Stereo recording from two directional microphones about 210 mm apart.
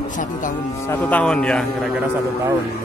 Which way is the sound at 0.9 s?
5° left (ahead or behind).